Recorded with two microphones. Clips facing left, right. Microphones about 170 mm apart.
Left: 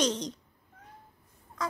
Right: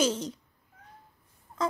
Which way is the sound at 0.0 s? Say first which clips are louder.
Right 2 dB; 5° right (ahead or behind).